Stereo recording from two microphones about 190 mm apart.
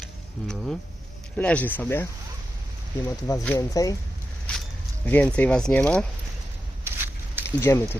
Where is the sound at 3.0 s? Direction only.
15° left (ahead or behind).